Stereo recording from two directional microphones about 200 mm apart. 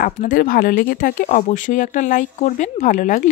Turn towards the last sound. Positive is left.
turn(degrees=40)  # may be behind; listen again after turning